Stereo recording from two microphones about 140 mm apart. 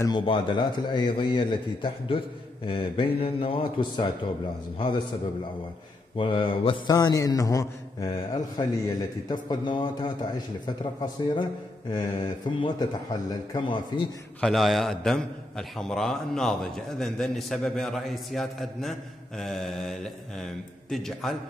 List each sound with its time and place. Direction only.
0.2 s a man's voice: 35° left (ahead or behind)
6.1 s a man's voice: 35° left (ahead or behind)
6.9 s a man's voice: 25° left (ahead or behind)
14.4 s a man's voice: centre (ahead or behind)